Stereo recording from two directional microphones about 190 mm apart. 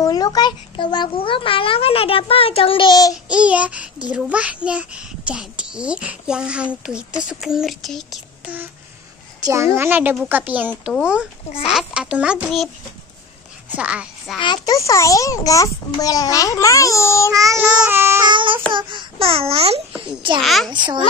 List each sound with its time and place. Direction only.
0.0 s a child's voice: 20° left (ahead or behind)
3.3 s child singing: 5° right (ahead or behind)
4.1 s a child's voice: 5° right (ahead or behind)
9.4 s a child's voice: 15° right (ahead or behind)
9.8 s child singing: 10° right (ahead or behind)
10.7 s a child's voice: 5° left (ahead or behind)
13.7 s a woman's voice: 5° right (ahead or behind)
14.4 s a child's voice: 20° left (ahead or behind)
17.3 s child singing: 15° right (ahead or behind)
18.3 s a child's voice: 25° right (ahead or behind)
20.4 s a child's voice: centre (ahead or behind)
20.7 s a child's voice: 25° right (ahead or behind)